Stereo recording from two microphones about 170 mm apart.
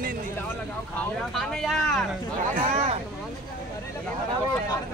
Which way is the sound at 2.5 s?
50° right (ahead or behind).